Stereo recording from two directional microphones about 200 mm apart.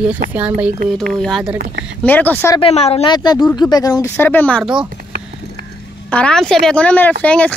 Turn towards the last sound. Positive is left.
turn(degrees=5)  # may be behind; listen again after turning